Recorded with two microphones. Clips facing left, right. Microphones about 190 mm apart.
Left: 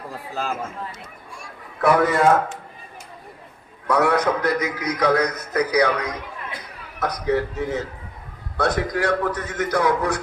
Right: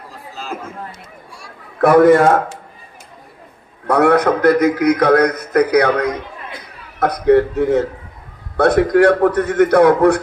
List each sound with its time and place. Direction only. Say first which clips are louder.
1.8 s a man's voice: right 9 dB; 55° right (ahead or behind)
3.8 s a man's voice: right 6 dB; 55° right (ahead or behind)